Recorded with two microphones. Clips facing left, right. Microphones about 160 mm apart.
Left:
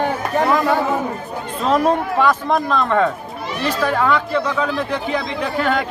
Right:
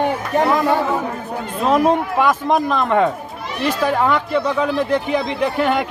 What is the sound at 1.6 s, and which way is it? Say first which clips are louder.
Speech: right 1 dB; 10° right (ahead or behind).